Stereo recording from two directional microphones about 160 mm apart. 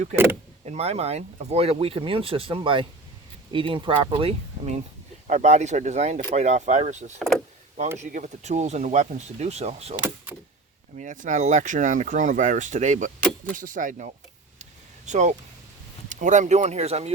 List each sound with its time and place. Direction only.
0.6 s speech: 40° right (ahead or behind)
10.9 s speech: 50° right (ahead or behind)
14.6 s a sound: 45° right (ahead or behind)
16.0 s speech: 50° right (ahead or behind)